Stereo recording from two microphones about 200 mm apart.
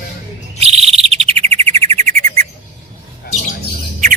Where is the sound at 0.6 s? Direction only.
30° right (ahead or behind).